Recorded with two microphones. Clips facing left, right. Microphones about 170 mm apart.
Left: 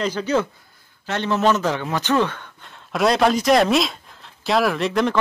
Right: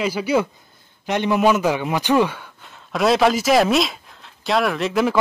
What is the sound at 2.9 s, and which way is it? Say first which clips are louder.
A man's voice: right 1 dB; centre (ahead or behind).